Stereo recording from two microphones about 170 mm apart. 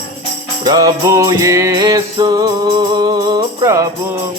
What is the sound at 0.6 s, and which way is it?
Music, 25° right (ahead or behind).